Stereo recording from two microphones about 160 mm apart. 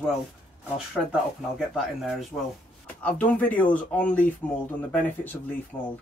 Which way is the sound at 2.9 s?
10° left (ahead or behind).